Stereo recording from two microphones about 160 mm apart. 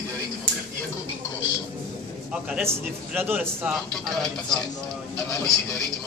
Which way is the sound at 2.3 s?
10° right (ahead or behind).